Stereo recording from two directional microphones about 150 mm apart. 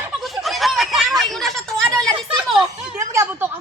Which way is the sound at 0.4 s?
Centre (ahead or behind).